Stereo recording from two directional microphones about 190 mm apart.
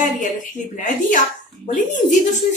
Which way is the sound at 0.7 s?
40° left (ahead or behind).